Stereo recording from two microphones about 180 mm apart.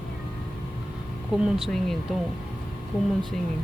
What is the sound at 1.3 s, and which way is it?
Speech, centre (ahead or behind).